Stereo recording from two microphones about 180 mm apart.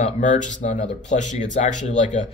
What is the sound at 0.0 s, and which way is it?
Speech, 45° left (ahead or behind).